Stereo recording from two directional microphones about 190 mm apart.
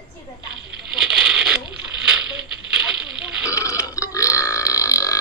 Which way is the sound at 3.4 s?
15° left (ahead or behind).